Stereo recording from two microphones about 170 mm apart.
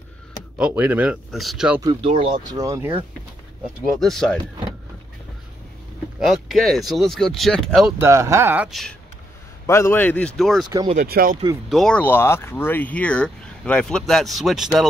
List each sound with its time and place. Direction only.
0.6 s speech: 10° right (ahead or behind)
1.8 s speech: 25° right (ahead or behind)
2.4 s speech: 20° right (ahead or behind)
4.0 s speech: centre (ahead or behind)
6.1 s speech: centre (ahead or behind)
8.0 s speech: 15° right (ahead or behind)
9.7 s speech: 15° left (ahead or behind)
11.0 s speech: 60° right (ahead or behind)
11.7 s speech: 5° left (ahead or behind)